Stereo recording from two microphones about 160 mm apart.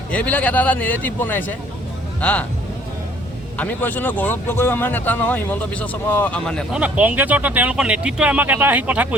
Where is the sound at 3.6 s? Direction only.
10° left (ahead or behind).